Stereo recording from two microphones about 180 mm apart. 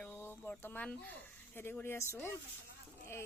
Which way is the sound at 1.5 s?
10° left (ahead or behind).